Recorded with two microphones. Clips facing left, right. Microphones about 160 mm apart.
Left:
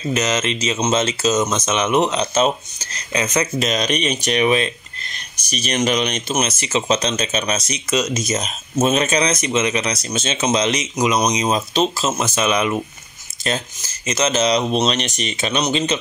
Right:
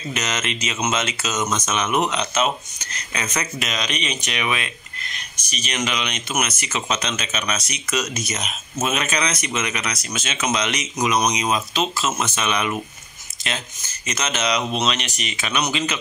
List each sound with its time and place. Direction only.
0.1 s speech: 30° left (ahead or behind)